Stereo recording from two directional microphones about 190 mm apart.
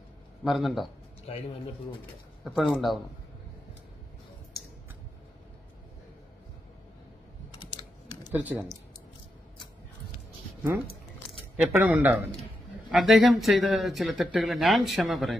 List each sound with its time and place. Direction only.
0.4 s speech: centre (ahead or behind)
1.3 s a man's voice: 30° left (ahead or behind)
2.4 s speech: centre (ahead or behind)
8.2 s speech: 10° right (ahead or behind)
11.5 s speech: 5° right (ahead or behind)